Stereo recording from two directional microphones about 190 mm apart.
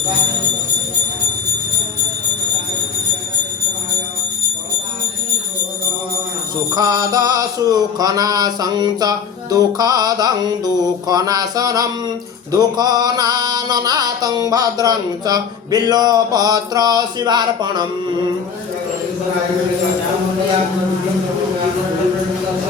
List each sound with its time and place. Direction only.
6.7 s mantra: 20° right (ahead or behind)